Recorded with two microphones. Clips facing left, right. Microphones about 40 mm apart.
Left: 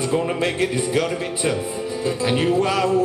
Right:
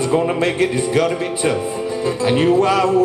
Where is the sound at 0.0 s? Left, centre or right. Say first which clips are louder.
Right 4 dB; centre.